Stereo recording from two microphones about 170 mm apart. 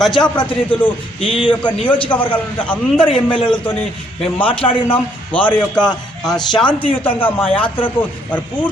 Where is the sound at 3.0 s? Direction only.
30° left (ahead or behind).